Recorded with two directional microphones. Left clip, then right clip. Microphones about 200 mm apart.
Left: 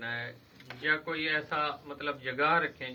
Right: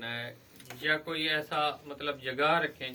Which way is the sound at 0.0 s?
30° right (ahead or behind).